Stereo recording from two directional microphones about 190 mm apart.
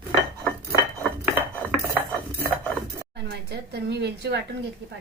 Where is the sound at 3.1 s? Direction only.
60° right (ahead or behind).